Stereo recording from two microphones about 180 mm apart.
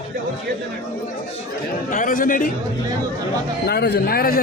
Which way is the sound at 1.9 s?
50° left (ahead or behind).